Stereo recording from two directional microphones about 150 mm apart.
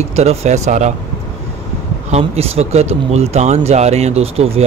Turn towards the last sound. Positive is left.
turn(degrees=-40)  # may be behind; listen again after turning